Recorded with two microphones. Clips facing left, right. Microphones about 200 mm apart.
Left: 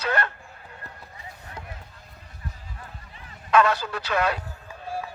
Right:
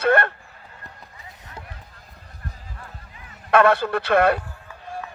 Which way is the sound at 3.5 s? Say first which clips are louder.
Right 4 dB; 60° right (ahead or behind).